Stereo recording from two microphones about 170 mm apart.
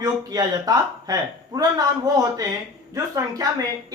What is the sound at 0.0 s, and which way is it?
A man's voice, 20° right (ahead or behind).